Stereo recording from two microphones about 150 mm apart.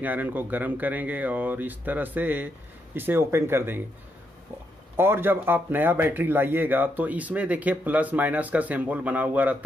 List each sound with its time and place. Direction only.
0.0 s speech: 10° right (ahead or behind)
4.9 s speech: 15° right (ahead or behind)